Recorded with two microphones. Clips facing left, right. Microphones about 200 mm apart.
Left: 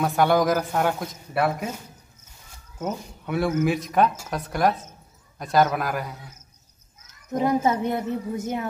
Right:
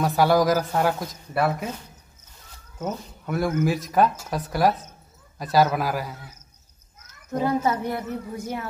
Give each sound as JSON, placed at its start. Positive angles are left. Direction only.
{"t": 0.0, "sound": "speech", "side_deg": 0}
{"t": 3.3, "sound": "speech", "side_deg": 0}
{"t": 7.3, "sound": "a woman's voice", "side_deg": 20}